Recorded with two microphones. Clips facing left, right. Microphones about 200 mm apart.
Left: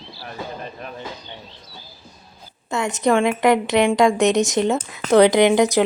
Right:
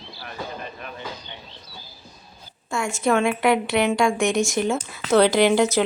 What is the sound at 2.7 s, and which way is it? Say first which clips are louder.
A woman's voice: left 3 dB; 20° left (ahead or behind).